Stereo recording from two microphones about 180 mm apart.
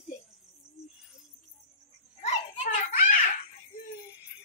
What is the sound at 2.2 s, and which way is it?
Children playing, 40° left (ahead or behind).